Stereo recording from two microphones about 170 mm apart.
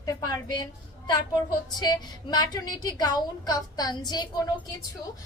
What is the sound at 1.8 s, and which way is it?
A woman's voice, 25° left (ahead or behind).